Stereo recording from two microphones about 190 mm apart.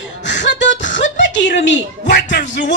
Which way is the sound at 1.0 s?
70° left (ahead or behind).